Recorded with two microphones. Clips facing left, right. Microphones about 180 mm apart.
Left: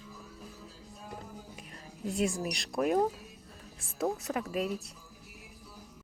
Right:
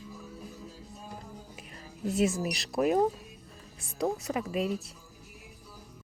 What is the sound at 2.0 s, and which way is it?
Speech, 5° right (ahead or behind).